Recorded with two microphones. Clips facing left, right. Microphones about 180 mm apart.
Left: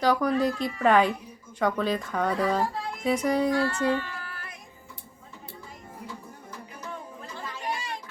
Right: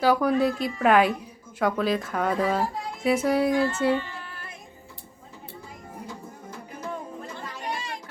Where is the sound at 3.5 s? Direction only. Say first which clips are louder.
Right 2 dB; 20° right (ahead or behind).